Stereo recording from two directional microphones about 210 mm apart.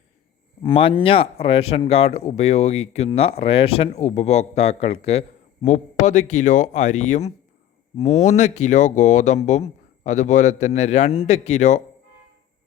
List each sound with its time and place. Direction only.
0.6 s speech: 25° left (ahead or behind)